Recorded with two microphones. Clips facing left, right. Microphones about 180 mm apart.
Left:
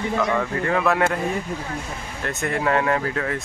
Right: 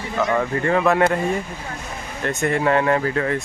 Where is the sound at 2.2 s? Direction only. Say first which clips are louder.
Right 4 dB; centre (ahead or behind).